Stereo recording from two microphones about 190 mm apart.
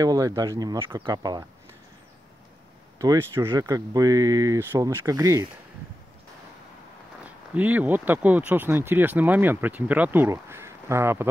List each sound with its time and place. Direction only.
0.0 s speech: 20° right (ahead or behind)
3.0 s speech: 15° right (ahead or behind)
7.2 s speech: 10° right (ahead or behind)